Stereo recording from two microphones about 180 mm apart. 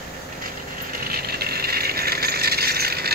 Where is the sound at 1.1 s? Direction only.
60° right (ahead or behind).